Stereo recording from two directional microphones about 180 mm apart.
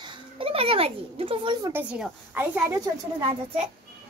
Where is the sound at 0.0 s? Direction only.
30° right (ahead or behind).